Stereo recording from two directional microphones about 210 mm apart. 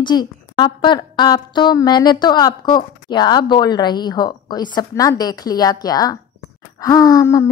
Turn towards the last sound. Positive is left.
turn(degrees=15)  # may be behind; listen again after turning